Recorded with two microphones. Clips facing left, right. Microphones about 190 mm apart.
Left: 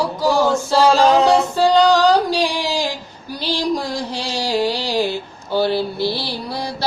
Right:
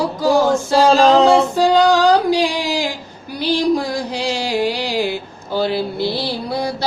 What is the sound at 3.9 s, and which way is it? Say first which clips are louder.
Music: right 3 dB; 15° right (ahead or behind).